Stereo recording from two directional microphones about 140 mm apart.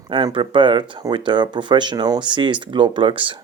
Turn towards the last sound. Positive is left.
turn(degrees=-35)  # may be behind; listen again after turning